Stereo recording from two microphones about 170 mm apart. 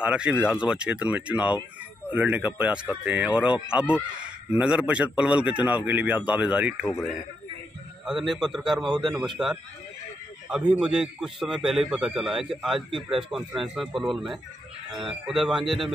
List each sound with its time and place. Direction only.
0.0 s a man's voice: 5° right (ahead or behind)
8.0 s a man's voice: centre (ahead or behind)
10.7 s a man's voice: 5° right (ahead or behind)